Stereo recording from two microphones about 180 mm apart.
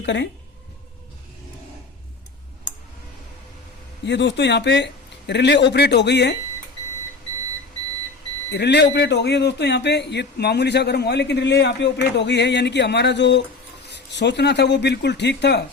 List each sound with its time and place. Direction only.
0.0 s a man's voice: 75° left (ahead or behind)
4.0 s a man's voice: 75° left (ahead or behind)
8.5 s a man's voice: 70° left (ahead or behind)